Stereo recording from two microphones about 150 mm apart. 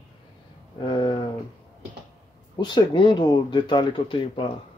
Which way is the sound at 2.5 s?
30° left (ahead or behind).